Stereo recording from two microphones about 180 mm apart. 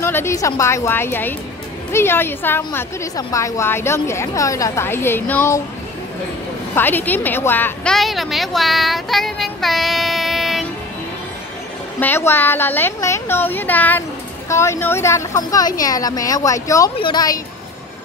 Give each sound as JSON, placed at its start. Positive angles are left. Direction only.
{"t": 0.0, "sound": "a woman's voice", "side_deg": 15}
{"t": 6.7, "sound": "a woman's voice", "side_deg": 10}
{"t": 12.0, "sound": "a woman's voice", "side_deg": 10}